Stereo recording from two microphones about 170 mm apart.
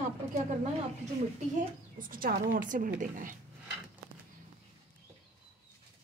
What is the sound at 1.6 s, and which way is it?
Speech, 55° right (ahead or behind).